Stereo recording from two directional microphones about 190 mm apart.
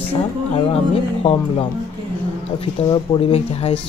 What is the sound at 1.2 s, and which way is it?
Speech, 30° left (ahead or behind).